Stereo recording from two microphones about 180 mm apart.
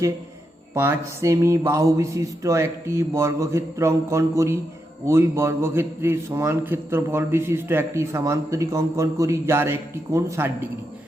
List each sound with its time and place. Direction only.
0.7 s a man's voice: 15° right (ahead or behind)